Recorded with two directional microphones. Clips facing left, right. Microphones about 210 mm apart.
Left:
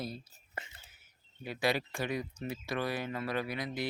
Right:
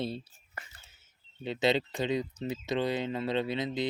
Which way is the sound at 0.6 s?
25° left (ahead or behind).